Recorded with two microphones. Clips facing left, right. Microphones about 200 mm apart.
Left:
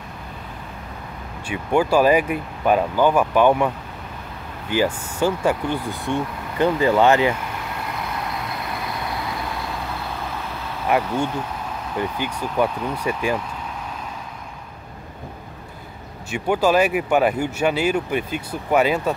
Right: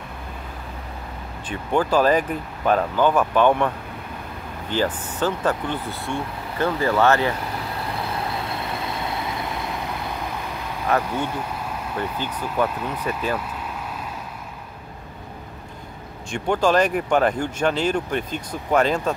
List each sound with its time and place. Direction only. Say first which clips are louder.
1.5 s speech: left 2 dB; 10° left (ahead or behind)
7.3 s vehicle: right 1 dB; 35° right (ahead or behind)
10.9 s speech: left 2 dB; 15° left (ahead or behind)
16.3 s speech: left 1 dB; 5° left (ahead or behind)